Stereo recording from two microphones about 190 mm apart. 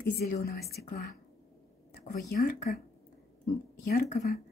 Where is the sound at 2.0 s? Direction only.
45° left (ahead or behind).